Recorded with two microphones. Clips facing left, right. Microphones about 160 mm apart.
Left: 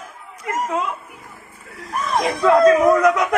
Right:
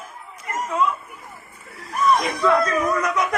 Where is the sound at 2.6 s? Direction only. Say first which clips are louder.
Left 9 dB; 90° left.